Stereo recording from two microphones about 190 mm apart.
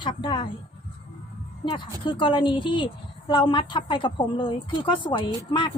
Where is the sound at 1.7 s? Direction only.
25° left (ahead or behind).